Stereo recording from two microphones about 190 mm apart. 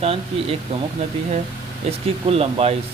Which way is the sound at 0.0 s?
30° right (ahead or behind).